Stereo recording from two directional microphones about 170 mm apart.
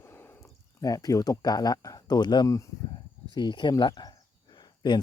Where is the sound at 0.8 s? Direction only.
20° left (ahead or behind).